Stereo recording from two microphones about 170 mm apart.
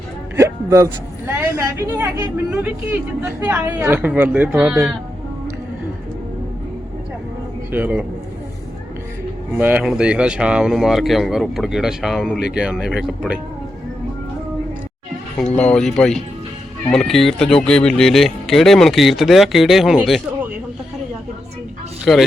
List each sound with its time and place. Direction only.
0.3 s a sound: 15° right (ahead or behind)
1.3 s speech: 15° right (ahead or behind)
7.7 s speech: 10° right (ahead or behind)
9.6 s speech: 10° right (ahead or behind)
15.5 s speech: 5° left (ahead or behind)
22.0 s speech: centre (ahead or behind)